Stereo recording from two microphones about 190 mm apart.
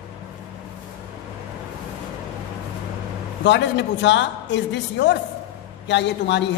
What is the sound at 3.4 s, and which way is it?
A man's voice, 65° left (ahead or behind).